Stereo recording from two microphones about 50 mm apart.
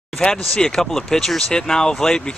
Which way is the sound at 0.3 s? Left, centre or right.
Centre.